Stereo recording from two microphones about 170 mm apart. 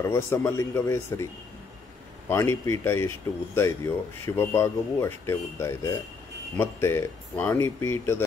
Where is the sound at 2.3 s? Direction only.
15° left (ahead or behind).